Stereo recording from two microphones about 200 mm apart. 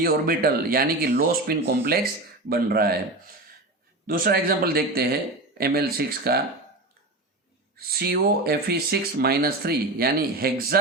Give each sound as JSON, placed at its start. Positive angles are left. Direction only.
{"t": 0.0, "sound": "speech", "side_deg": -45}
{"t": 4.0, "sound": "speech", "side_deg": -45}
{"t": 7.8, "sound": "speech", "side_deg": -50}